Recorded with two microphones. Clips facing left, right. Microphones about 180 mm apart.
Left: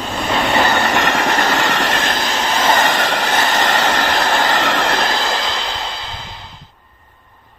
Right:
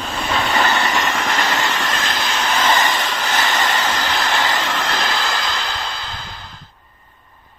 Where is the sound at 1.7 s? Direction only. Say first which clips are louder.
Left 4 dB; 70° left (ahead or behind).